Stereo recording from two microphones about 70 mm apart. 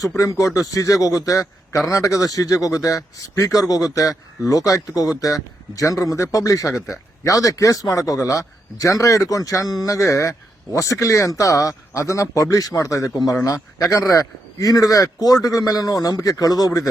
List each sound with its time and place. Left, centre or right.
0.2 s a man's voice: left